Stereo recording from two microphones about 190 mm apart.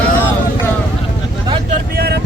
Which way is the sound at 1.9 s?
55° right (ahead or behind).